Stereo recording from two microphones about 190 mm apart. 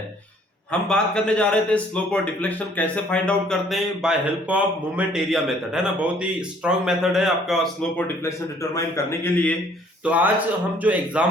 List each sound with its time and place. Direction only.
0.7 s a man's voice: 5° left (ahead or behind)
10.0 s speech: 10° right (ahead or behind)